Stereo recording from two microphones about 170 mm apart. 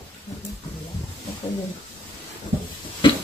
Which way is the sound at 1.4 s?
25° left (ahead or behind).